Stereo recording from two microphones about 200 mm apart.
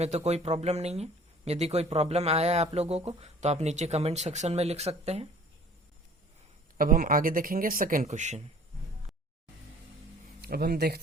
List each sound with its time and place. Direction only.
0.0 s speech: 35° right (ahead or behind)
6.7 s speech: 45° right (ahead or behind)
10.4 s speech: 50° right (ahead or behind)